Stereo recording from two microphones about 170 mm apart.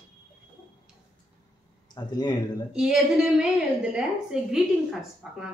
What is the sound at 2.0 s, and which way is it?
Speech, 25° left (ahead or behind).